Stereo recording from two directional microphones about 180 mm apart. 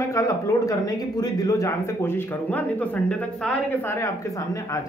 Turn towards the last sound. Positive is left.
turn(degrees=15)  # may be behind; listen again after turning